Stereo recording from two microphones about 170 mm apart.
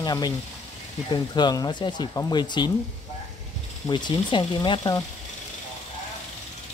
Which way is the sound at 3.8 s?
25° left (ahead or behind).